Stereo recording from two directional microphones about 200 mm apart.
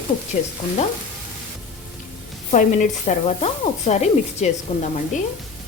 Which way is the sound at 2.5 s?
40° left (ahead or behind).